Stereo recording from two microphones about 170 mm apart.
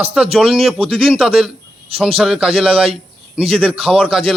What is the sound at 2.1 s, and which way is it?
A man's voice, centre (ahead or behind).